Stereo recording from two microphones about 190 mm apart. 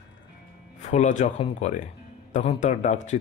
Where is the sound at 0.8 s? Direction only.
40° left (ahead or behind).